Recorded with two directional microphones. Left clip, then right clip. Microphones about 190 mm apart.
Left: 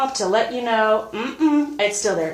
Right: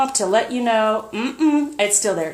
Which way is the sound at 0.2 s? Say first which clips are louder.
Right 1 dB; 45° right (ahead or behind).